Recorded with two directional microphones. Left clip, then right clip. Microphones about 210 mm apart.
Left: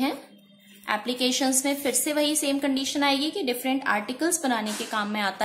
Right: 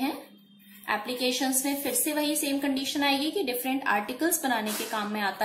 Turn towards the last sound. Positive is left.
turn(degrees=30)  # may be behind; listen again after turning